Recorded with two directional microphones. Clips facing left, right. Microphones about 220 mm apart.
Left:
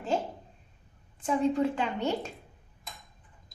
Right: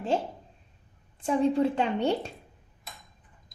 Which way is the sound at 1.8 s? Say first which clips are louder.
Right 4 dB; 35° right (ahead or behind).